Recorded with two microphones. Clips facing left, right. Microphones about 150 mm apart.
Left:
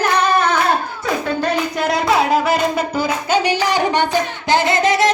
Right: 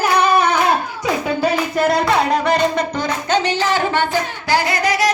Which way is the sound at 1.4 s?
Centre (ahead or behind).